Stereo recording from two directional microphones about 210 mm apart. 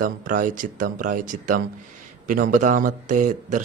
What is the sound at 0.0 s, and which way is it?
A man's voice, 40° right (ahead or behind).